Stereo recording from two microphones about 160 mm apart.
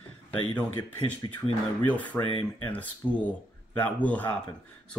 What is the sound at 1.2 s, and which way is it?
Speech, 30° left (ahead or behind).